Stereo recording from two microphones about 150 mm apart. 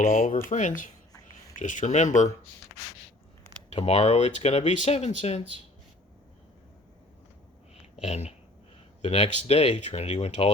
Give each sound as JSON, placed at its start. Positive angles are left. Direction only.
{"t": 0.0, "sound": "speech", "side_deg": 65}
{"t": 3.7, "sound": "speech", "side_deg": 45}
{"t": 8.0, "sound": "speech", "side_deg": 45}